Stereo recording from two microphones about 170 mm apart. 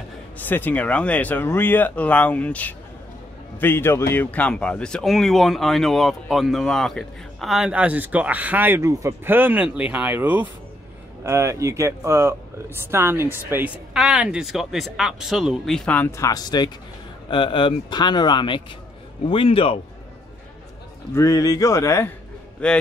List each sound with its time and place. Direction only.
0.4 s speech: 10° left (ahead or behind); by 19.8 s 35° left (ahead or behind)
21.1 s speech: 20° left (ahead or behind)